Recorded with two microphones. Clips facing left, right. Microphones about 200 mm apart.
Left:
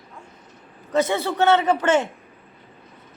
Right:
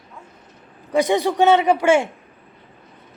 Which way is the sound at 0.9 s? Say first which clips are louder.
Right 3 dB; 15° right (ahead or behind).